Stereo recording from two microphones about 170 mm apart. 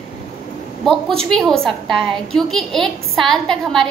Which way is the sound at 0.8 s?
5° left (ahead or behind).